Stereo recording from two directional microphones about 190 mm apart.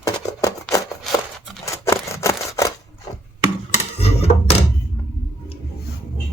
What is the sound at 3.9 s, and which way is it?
Dishes, 30° left (ahead or behind).